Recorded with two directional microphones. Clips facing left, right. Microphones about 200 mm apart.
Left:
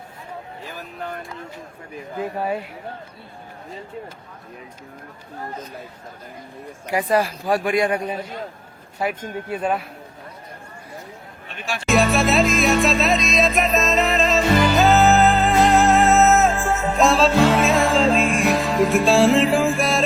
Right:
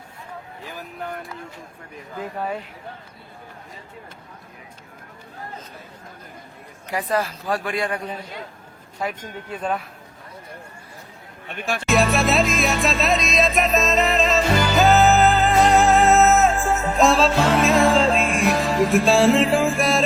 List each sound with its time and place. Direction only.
6.8 s speech: 10° left (ahead or behind)
9.5 s speech: 10° left (ahead or behind)
11.4 s speech: 55° right (ahead or behind)
11.9 s music: centre (ahead or behind)